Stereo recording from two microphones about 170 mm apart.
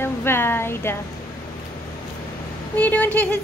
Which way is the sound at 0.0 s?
15° left (ahead or behind).